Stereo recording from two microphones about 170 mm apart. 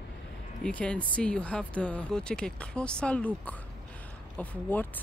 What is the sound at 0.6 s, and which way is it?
Speech, 5° left (ahead or behind).